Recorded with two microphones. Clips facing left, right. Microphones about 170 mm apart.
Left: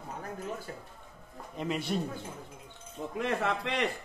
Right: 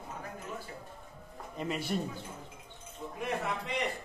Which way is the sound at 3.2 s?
90° left.